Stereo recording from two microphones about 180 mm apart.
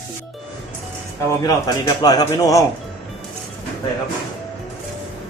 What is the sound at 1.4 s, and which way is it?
A man's voice, 20° left (ahead or behind).